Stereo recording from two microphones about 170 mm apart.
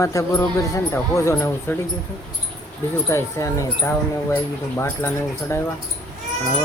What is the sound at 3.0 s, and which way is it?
Speech, 15° left (ahead or behind).